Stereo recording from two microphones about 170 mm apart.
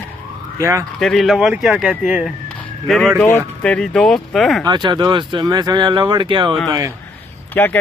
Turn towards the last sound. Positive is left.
turn(degrees=10)  # may be behind; listen again after turning